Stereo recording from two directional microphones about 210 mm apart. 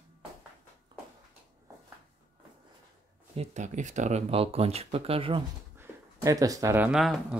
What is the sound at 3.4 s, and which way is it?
Speech, 35° right (ahead or behind).